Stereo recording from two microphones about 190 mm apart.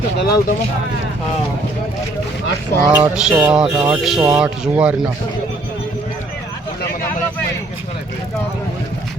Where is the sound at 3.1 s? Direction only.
5° right (ahead or behind).